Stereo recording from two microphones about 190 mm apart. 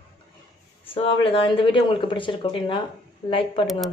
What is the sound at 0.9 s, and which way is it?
A woman's voice, 30° left (ahead or behind).